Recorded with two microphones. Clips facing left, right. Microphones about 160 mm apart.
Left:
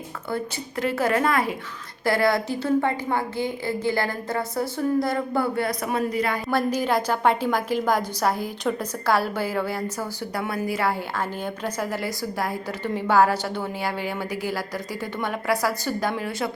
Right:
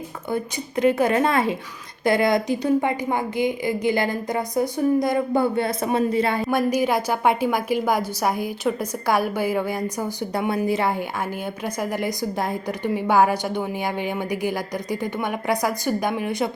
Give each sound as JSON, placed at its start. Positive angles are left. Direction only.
{"t": 0.3, "sound": "a woman's voice", "side_deg": -20}
{"t": 6.5, "sound": "a woman's voice", "side_deg": -10}